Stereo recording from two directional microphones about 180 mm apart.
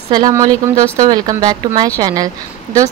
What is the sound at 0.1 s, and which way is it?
A woman's voice, 20° right (ahead or behind).